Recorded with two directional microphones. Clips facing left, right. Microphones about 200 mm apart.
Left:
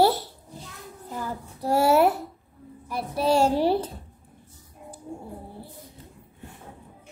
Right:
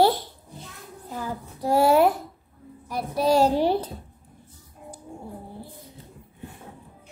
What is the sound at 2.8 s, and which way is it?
Child singing, 40° right (ahead or behind).